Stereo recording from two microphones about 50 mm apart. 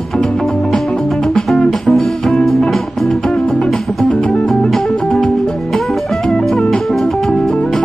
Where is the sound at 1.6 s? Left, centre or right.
Centre.